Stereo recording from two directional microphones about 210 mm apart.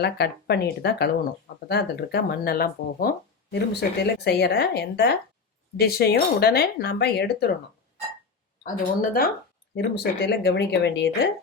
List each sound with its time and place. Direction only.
0.0 s speech: 50° left (ahead or behind)
8.6 s speech: 40° left (ahead or behind)